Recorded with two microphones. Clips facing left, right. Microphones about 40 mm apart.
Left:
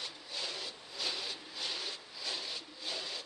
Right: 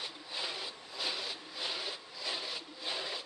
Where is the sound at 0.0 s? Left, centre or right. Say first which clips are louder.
Right 2 dB; centre.